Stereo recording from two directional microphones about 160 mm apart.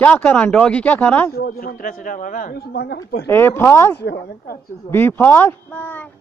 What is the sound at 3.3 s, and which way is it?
Speech, 15° left (ahead or behind).